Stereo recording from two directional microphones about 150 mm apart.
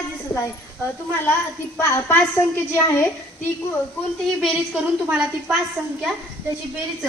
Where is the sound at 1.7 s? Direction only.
15° left (ahead or behind).